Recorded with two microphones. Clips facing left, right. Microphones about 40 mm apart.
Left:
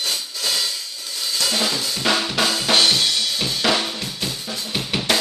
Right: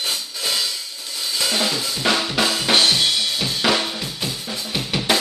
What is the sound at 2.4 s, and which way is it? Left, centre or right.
Drum kit, centre.